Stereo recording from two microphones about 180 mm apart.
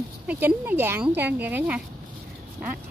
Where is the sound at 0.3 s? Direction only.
10° right (ahead or behind).